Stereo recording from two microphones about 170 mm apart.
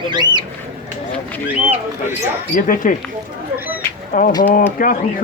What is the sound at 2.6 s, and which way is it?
Speech, 50° left (ahead or behind).